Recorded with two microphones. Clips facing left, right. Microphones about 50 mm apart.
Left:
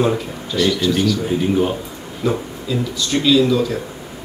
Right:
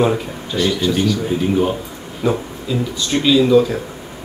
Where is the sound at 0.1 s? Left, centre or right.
Centre.